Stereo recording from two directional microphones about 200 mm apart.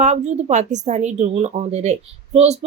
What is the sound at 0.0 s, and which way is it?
A woman's voice, 35° right (ahead or behind).